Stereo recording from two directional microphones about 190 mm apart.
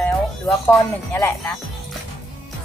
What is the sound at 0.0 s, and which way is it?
Speech, 10° left (ahead or behind).